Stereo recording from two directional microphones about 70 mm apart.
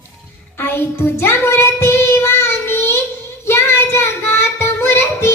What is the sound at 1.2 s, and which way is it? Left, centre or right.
Child singing, left.